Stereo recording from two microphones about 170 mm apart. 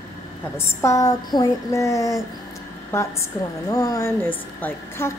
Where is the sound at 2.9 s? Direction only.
15° left (ahead or behind).